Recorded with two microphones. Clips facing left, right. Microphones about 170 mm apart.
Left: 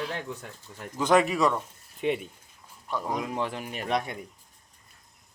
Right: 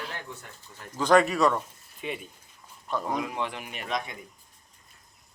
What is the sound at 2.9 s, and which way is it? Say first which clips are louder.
Speech: right 1 dB; centre (ahead or behind).